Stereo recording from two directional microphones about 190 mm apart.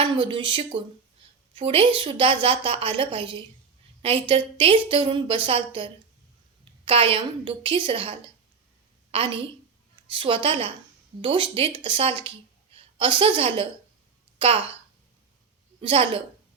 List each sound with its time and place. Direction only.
0.0 s a woman's voice: 25° right (ahead or behind)
9.1 s a woman's voice: 25° right (ahead or behind)
15.8 s a woman's voice: 30° right (ahead or behind)